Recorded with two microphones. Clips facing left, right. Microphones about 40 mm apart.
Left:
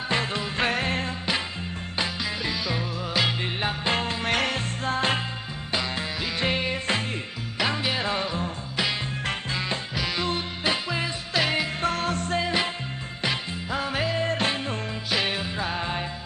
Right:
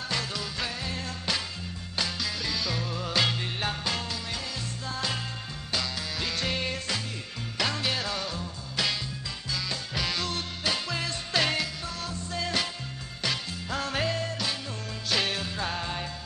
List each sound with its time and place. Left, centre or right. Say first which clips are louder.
0.1 s music: left 7 dB; left
0.7 s music: left 9 dB; left
1.0 s music: left 4 dB; left
3.8 s music: left 6 dB; left
4.3 s music: left 10 dB; left
5.7 s music: left 4 dB; left
9.5 s music: left 1 dB; left
9.9 s music: left 1 dB; centre
10.2 s music: left 4 dB; left
11.3 s music: left 2 dB; centre
11.8 s music: left 10 dB; left
12.4 s music: even; left
14.1 s music: left 6 dB; left
15.0 s music: left 1 dB; centre